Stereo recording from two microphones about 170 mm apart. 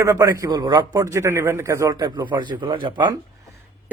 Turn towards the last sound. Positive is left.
turn(degrees=-25)  # may be behind; listen again after turning